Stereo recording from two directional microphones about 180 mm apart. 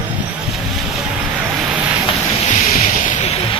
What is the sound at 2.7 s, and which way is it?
Vehicle, 40° left (ahead or behind).